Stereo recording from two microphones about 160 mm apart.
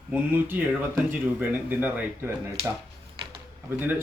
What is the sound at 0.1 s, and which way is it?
Speech, 10° right (ahead or behind).